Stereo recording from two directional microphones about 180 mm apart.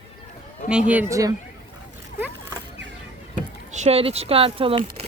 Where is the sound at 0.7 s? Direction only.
5° right (ahead or behind).